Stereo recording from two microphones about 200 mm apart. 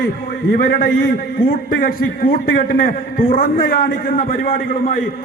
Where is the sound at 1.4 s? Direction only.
45° left (ahead or behind).